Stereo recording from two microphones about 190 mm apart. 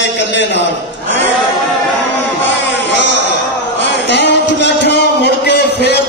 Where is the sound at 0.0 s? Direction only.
65° left (ahead or behind).